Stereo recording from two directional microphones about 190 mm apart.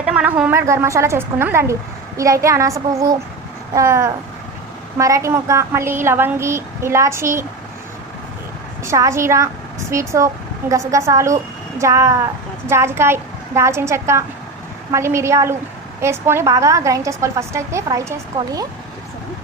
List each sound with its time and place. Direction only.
0.0 s a woman's voice: 5° right (ahead or behind)
8.8 s a woman's voice: 15° right (ahead or behind)